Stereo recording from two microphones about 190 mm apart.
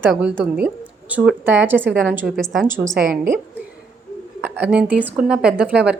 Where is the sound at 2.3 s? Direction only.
Centre (ahead or behind).